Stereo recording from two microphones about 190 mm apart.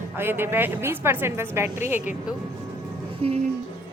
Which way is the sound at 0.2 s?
10° right (ahead or behind).